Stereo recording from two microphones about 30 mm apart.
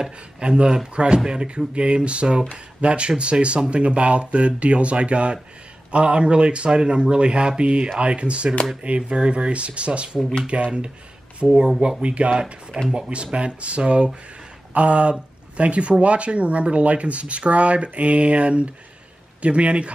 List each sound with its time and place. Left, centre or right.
0.4 s speech: right
12.7 s speech: right
13.1 s speech: right